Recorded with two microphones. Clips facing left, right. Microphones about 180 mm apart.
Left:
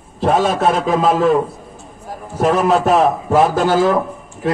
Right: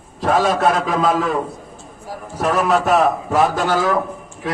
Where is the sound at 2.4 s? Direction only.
30° left (ahead or behind).